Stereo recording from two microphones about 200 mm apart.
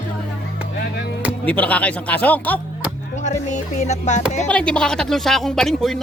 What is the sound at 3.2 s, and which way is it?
Music, 35° left (ahead or behind).